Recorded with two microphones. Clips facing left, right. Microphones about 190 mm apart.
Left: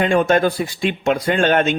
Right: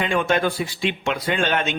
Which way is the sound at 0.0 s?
45° left (ahead or behind).